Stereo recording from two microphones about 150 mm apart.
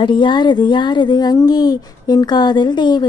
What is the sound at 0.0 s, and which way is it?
A woman's voice, 30° left (ahead or behind).